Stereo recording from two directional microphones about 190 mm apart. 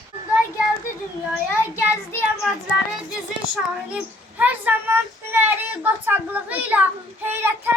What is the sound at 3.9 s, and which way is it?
Speech, 10° right (ahead or behind).